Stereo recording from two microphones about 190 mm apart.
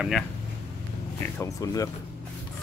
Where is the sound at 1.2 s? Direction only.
15° left (ahead or behind).